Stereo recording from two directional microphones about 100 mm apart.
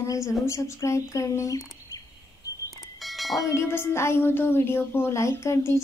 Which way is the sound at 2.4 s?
35° left (ahead or behind).